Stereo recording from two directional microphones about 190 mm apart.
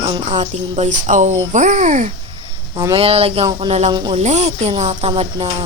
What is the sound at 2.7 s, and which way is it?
Speech, 25° right (ahead or behind).